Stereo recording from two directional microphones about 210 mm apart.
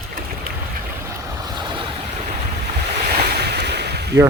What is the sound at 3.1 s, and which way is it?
Waves, 50° right (ahead or behind).